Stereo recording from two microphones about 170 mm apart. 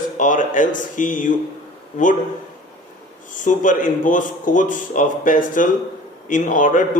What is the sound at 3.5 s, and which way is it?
A man's voice, 50° left (ahead or behind).